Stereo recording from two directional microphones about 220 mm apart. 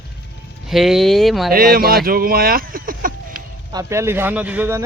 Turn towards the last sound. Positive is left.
turn(degrees=-10)  # may be behind; listen again after turning